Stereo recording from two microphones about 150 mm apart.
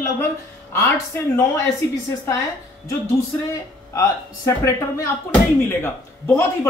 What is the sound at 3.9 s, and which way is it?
Speech, 20° left (ahead or behind).